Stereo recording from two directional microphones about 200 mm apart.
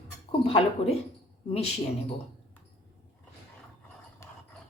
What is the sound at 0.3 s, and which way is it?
Speech, 30° left (ahead or behind).